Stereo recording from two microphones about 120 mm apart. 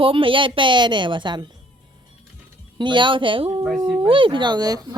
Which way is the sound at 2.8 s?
40° right (ahead or behind).